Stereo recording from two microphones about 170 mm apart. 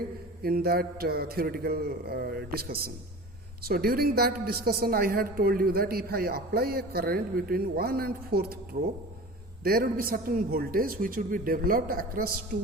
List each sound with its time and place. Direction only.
0.4 s a woman's voice: 65° right (ahead or behind)
8.7 s speech: 50° right (ahead or behind)
9.6 s a woman's voice: 60° right (ahead or behind)